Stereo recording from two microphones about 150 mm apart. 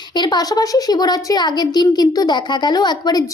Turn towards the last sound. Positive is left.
turn(degrees=25)  # may be behind; listen again after turning